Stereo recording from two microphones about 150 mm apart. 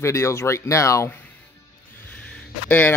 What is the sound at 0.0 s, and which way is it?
Speech, 20° left (ahead or behind).